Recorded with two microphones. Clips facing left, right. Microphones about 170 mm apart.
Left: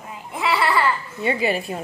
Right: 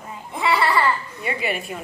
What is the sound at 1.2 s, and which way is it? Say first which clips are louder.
Speech: left 7 dB; 30° left (ahead or behind).